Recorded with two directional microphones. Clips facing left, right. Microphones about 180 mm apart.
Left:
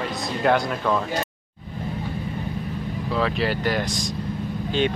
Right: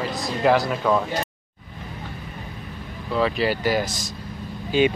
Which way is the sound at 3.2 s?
Centre (ahead or behind).